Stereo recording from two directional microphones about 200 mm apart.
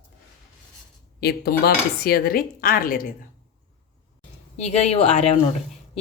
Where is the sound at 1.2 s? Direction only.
50° left (ahead or behind).